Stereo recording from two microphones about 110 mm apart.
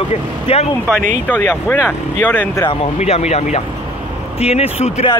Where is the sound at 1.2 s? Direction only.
15° left (ahead or behind).